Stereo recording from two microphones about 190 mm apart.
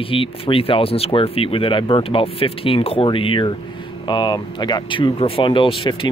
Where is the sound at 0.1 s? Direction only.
30° left (ahead or behind).